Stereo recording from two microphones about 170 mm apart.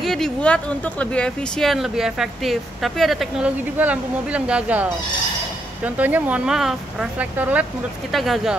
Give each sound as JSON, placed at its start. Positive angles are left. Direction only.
{"t": 0.0, "sound": "speech", "side_deg": 0}